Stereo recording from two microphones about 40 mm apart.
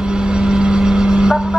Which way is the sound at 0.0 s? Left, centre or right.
Centre.